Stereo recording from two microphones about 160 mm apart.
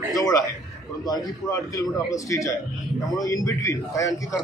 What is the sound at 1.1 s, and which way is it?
A man's voice, 20° left (ahead or behind).